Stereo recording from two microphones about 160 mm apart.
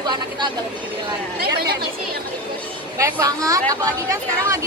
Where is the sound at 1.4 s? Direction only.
80° right.